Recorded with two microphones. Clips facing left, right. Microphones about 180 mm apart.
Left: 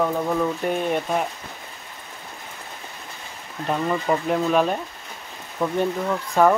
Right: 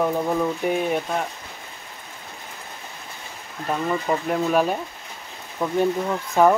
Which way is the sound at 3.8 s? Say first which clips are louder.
Left 1 dB; centre (ahead or behind).